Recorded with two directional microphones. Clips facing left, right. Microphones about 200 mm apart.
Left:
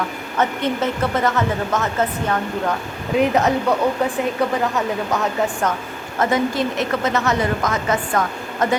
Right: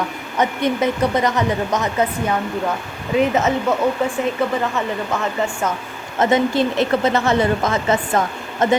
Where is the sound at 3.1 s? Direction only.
Centre (ahead or behind).